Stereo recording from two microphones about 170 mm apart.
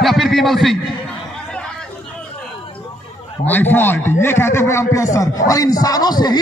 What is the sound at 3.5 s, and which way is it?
A man's voice, 10° left (ahead or behind).